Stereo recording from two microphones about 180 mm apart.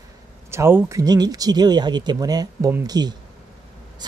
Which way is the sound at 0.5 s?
15° right (ahead or behind).